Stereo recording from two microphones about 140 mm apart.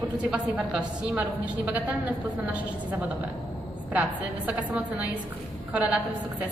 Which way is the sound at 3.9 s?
10° right (ahead or behind).